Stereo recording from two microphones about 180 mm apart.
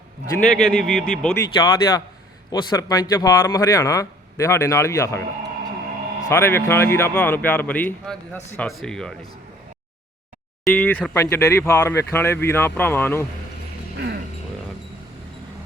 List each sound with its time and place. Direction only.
0.3 s a man's voice: centre (ahead or behind)
1.2 s speech: 15° left (ahead or behind)
6.2 s a man's voice: 15° left (ahead or behind)
10.6 s speech: 10° left (ahead or behind)